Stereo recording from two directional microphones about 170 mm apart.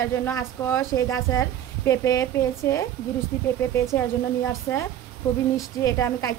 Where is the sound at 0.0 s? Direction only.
15° left (ahead or behind).